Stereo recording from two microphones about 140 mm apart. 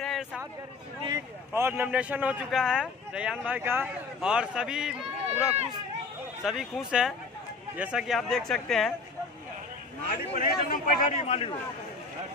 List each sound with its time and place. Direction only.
0.0 s a sound: centre (ahead or behind)
1.0 s a man's voice: 20° right (ahead or behind); by 8.9 s 5° left (ahead or behind)
10.0 s a man's voice: 90° left; by 11.5 s 50° left (ahead or behind)